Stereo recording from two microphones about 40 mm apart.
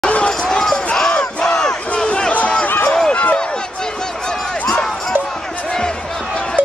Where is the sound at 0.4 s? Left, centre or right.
Centre.